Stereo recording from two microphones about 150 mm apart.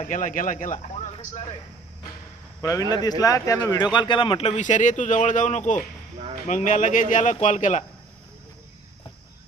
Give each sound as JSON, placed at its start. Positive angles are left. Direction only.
{"t": 0.0, "sound": "speech", "side_deg": 60}
{"t": 2.6, "sound": "speech", "side_deg": 25}
{"t": 4.5, "sound": "speech", "side_deg": 55}